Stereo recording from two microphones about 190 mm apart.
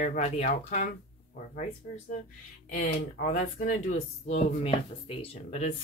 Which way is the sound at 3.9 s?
35° left (ahead or behind).